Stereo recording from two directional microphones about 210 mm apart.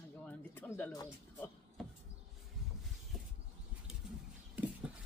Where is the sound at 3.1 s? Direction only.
Centre (ahead or behind).